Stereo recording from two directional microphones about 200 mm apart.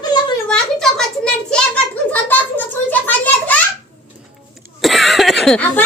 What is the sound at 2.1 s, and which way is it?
A child's voice, 10° left (ahead or behind).